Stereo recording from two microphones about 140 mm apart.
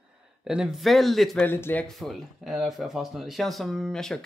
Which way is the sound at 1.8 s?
Centre (ahead or behind).